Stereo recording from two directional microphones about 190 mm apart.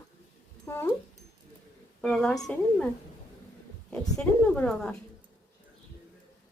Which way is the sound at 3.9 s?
5° left (ahead or behind).